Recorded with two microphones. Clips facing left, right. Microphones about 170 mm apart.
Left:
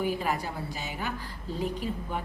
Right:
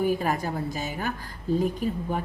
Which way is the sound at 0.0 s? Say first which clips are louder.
Right 4 dB; 45° right (ahead or behind).